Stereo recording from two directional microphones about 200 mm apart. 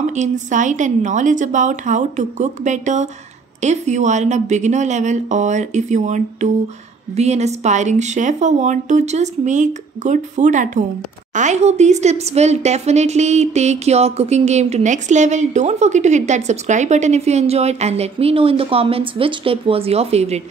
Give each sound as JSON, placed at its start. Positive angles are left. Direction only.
{"t": 0.0, "sound": "speech", "side_deg": -35}